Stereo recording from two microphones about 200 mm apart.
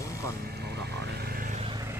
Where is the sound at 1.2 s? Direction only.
45° right (ahead or behind).